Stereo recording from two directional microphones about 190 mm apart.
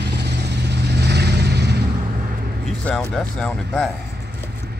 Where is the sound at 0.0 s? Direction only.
60° right (ahead or behind).